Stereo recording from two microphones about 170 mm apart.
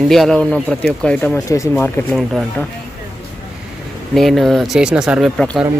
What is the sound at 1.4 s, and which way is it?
Speech, 20° left (ahead or behind).